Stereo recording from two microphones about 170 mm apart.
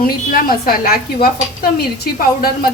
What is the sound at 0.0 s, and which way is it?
Stir, 55° left (ahead or behind).